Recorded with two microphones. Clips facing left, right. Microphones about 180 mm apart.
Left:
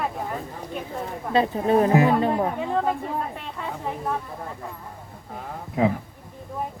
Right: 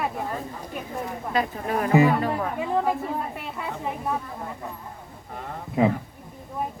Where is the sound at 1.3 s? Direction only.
30° left (ahead or behind).